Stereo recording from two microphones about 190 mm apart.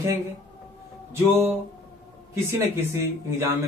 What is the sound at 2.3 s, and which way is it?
Speech, 15° right (ahead or behind).